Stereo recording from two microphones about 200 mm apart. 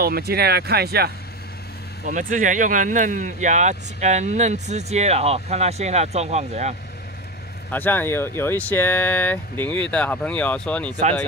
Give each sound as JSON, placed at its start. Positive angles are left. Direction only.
{"t": 0.0, "sound": "speech", "side_deg": -50}
{"t": 2.0, "sound": "speech", "side_deg": -40}
{"t": 7.7, "sound": "speech", "side_deg": 10}